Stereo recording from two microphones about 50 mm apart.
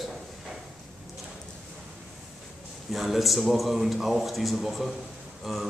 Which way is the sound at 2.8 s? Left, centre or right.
Centre.